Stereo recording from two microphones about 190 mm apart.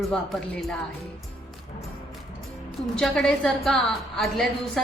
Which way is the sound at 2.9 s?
5° left (ahead or behind).